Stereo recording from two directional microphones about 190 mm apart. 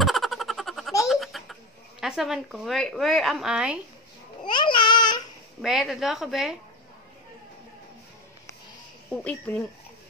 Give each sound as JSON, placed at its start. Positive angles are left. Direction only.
{"t": 0.0, "sound": "a sound", "side_deg": 0}
{"t": 4.4, "sound": "babbling", "side_deg": 25}
{"t": 5.6, "sound": "a woman's voice", "side_deg": 0}